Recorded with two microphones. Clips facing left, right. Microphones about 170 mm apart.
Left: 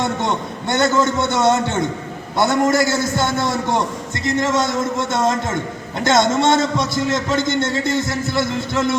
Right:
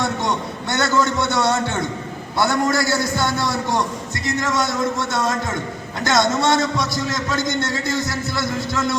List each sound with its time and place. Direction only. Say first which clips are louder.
0.0 s a man's voice: left 1 dB; 20° left (ahead or behind)